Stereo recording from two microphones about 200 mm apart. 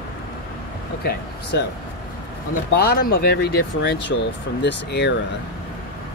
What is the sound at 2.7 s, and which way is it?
Speech, 50° left (ahead or behind).